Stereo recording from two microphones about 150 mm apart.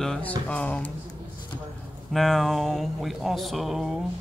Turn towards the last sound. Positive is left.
turn(degrees=0)  # may be behind; listen again after turning